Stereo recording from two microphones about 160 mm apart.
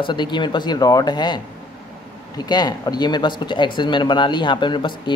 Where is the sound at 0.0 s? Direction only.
30° left (ahead or behind).